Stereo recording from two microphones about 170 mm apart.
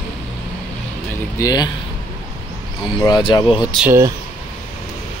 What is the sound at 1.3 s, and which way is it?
Speech, 20° left (ahead or behind).